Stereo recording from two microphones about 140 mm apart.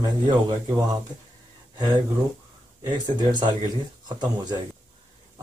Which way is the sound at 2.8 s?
30° right (ahead or behind).